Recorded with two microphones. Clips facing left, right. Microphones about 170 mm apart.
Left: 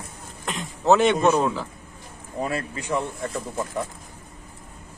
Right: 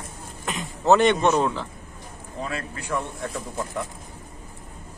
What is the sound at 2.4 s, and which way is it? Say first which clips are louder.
Speech: left 4 dB; 50° left (ahead or behind).